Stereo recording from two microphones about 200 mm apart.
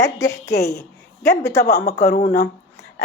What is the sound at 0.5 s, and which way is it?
Speech, 55° left (ahead or behind).